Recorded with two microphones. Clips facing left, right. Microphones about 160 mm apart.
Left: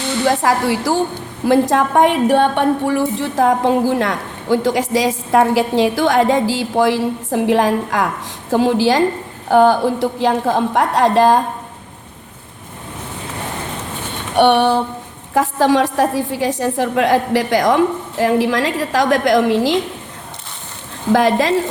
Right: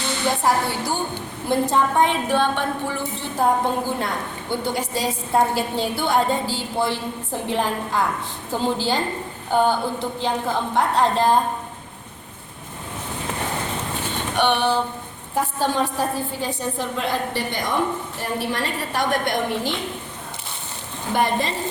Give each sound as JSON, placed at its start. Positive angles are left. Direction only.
{"t": 0.3, "sound": "a woman's voice", "side_deg": 90}
{"t": 14.3, "sound": "a sound", "side_deg": 65}
{"t": 15.4, "sound": "a woman's voice", "side_deg": 90}
{"t": 21.1, "sound": "a woman's voice", "side_deg": 90}